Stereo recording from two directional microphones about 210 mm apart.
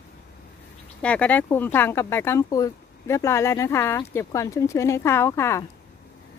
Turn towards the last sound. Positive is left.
turn(degrees=15)  # may be behind; listen again after turning